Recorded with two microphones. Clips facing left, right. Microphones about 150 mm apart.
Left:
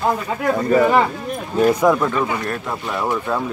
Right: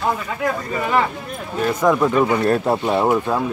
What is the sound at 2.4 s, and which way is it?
Speech, 35° right (ahead or behind).